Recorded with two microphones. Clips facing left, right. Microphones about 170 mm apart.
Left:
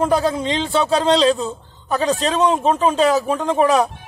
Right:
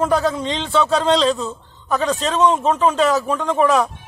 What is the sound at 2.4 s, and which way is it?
Speech, 15° left (ahead or behind).